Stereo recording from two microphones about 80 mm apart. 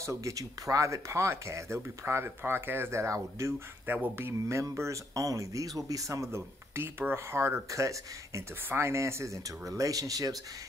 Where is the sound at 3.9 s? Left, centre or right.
Right.